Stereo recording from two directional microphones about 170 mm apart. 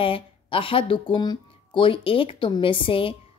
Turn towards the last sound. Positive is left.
turn(degrees=30)  # may be behind; listen again after turning